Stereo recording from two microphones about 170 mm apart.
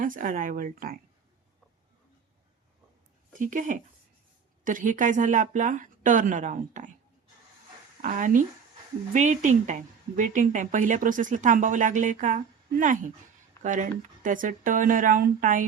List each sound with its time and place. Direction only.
0.0 s a woman's voice: 50° right (ahead or behind)
3.3 s a woman's voice: 50° right (ahead or behind)
8.0 s a woman's voice: 50° right (ahead or behind)
13.6 s a woman's voice: 50° right (ahead or behind)